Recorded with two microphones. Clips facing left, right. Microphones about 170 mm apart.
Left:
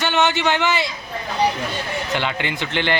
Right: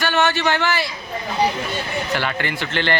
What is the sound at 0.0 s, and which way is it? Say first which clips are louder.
Speech: even; 20° left (ahead or behind).